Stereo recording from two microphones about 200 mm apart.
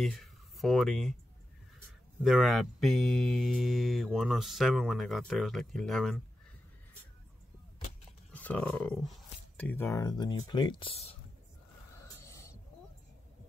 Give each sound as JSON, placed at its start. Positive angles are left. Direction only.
{"t": 0.0, "sound": "speech", "side_deg": 0}
{"t": 2.2, "sound": "speech", "side_deg": 0}
{"t": 8.3, "sound": "speech", "side_deg": 5}
{"t": 12.2, "sound": "owl", "side_deg": 15}